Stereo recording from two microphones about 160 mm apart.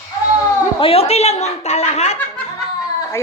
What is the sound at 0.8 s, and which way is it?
Speech, 35° left (ahead or behind).